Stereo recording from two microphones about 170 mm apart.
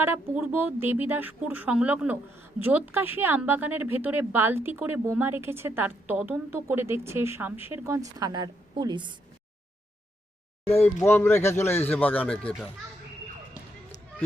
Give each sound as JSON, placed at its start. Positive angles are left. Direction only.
{"t": 0.0, "sound": "speech", "side_deg": -10}
{"t": 10.7, "sound": "speech", "side_deg": 40}
{"t": 11.0, "sound": "a man's voice", "side_deg": 15}